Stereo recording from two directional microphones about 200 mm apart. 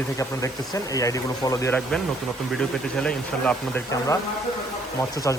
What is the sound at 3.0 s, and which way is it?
Speech, 5° left (ahead or behind).